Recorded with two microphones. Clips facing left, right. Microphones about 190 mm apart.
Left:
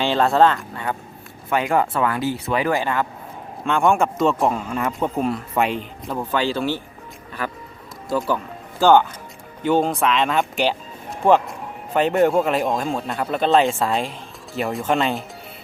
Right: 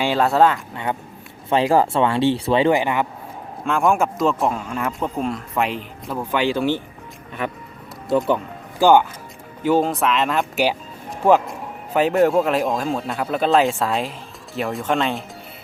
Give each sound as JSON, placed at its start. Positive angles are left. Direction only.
{"t": 0.0, "sound": "speech", "side_deg": -10}
{"t": 1.5, "sound": "speech", "side_deg": -30}
{"t": 3.7, "sound": "speech", "side_deg": 0}
{"t": 6.3, "sound": "speech", "side_deg": -15}
{"t": 8.8, "sound": "speech", "side_deg": -10}